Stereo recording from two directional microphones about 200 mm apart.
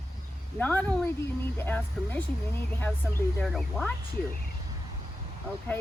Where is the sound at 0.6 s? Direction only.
10° left (ahead or behind).